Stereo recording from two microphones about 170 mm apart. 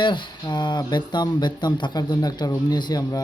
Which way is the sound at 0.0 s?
30° left (ahead or behind).